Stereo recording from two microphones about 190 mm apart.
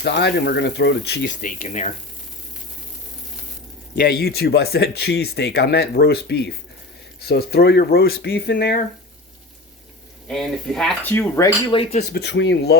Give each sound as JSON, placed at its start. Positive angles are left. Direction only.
{"t": 0.0, "sound": "speech", "side_deg": 60}
{"t": 1.4, "sound": "speech", "side_deg": 45}
{"t": 3.9, "sound": "speech", "side_deg": 55}
{"t": 10.2, "sound": "speech", "side_deg": 0}
{"t": 11.8, "sound": "speech", "side_deg": 35}
{"t": 12.1, "sound": "speech", "side_deg": 65}